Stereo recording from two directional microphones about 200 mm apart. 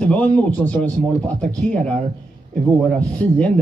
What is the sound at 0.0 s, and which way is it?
Speech, 5° left (ahead or behind).